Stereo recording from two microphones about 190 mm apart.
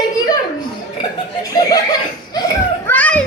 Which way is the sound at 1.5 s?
20° left (ahead or behind).